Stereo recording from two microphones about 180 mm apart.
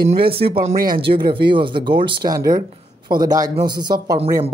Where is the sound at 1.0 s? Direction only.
30° right (ahead or behind).